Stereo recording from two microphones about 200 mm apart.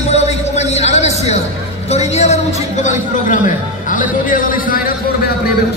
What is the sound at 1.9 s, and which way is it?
A man's voice, 30° left (ahead or behind).